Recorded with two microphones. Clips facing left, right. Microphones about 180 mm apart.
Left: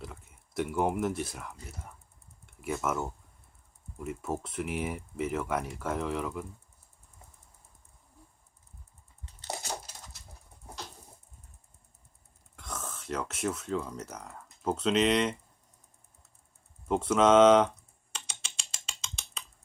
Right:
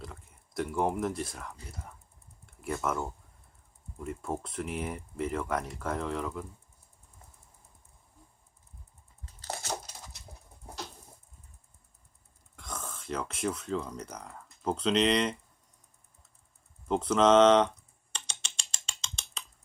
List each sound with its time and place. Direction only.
0.0 s speech: 5° left (ahead or behind)
9.4 s a sound: 15° left (ahead or behind)
12.5 s speech: centre (ahead or behind)
16.9 s speech: 5° left (ahead or behind)
18.1 s typing: 5° left (ahead or behind)